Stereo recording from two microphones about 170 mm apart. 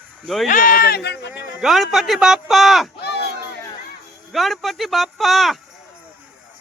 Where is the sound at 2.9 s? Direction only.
75° left (ahead or behind).